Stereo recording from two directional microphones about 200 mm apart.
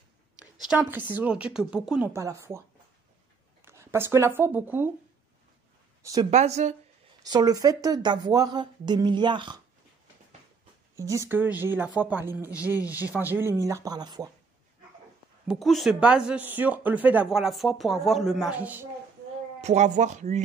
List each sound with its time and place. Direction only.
0.6 s speech: 5° right (ahead or behind)
3.6 s speech: 15° right (ahead or behind)
6.3 s speech: 35° right (ahead or behind)
7.2 s speech: 20° right (ahead or behind)
11.0 s speech: 15° right (ahead or behind)
15.4 s speech: centre (ahead or behind)
19.6 s speech: 35° right (ahead or behind)